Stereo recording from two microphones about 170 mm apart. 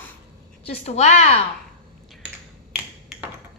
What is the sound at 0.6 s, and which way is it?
Speech, 35° left (ahead or behind).